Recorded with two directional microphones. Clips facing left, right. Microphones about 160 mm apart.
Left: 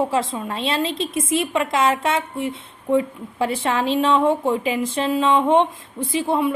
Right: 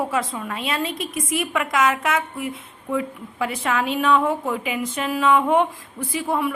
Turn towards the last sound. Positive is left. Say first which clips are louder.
# left 3 dB
turn(degrees=25)  # may be behind; listen again after turning